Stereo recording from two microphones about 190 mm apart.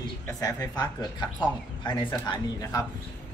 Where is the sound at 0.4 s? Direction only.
15° left (ahead or behind).